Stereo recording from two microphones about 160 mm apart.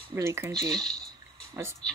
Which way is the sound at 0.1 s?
15° right (ahead or behind).